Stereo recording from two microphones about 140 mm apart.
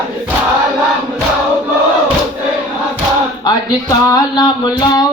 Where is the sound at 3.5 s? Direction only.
25° left (ahead or behind).